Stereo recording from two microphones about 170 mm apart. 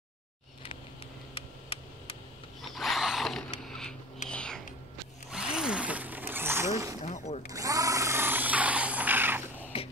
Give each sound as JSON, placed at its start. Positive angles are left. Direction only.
{"t": 1.3, "sound": "tick", "side_deg": 35}
{"t": 2.7, "sound": "zipper", "side_deg": 0}
{"t": 4.3, "sound": "whispering", "side_deg": 5}
{"t": 5.3, "sound": "zipper", "side_deg": -5}
{"t": 7.1, "sound": "zipper", "side_deg": 40}
{"t": 7.4, "sound": "a sound", "side_deg": -20}
{"t": 9.7, "sound": "a sound", "side_deg": 35}